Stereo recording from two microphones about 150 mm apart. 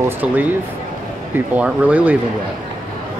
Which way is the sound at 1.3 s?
10° right (ahead or behind).